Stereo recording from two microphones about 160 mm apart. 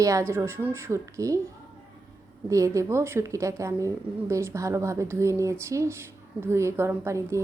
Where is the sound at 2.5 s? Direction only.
20° right (ahead or behind).